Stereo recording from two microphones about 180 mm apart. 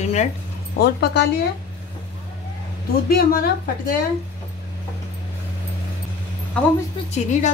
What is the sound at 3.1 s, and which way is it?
Speech, 55° left (ahead or behind).